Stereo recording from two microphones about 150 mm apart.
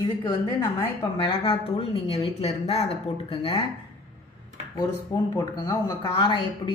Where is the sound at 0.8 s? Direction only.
35° left (ahead or behind).